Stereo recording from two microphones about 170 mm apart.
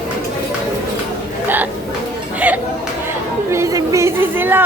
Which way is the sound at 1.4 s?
10° right (ahead or behind).